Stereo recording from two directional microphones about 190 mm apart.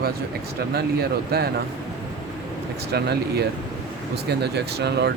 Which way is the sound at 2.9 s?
55° right (ahead or behind).